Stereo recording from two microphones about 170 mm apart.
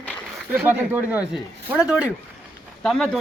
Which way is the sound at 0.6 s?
10° right (ahead or behind).